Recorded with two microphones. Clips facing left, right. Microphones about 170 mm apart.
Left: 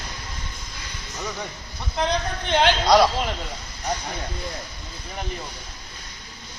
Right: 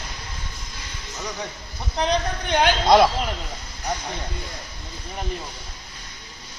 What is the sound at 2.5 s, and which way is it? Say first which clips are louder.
Speech: right 1 dB; 25° right (ahead or behind).